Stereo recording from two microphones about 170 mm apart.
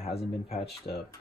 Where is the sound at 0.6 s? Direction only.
70° left (ahead or behind).